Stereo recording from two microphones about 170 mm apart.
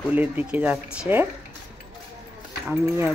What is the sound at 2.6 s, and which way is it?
Speech, 5° right (ahead or behind).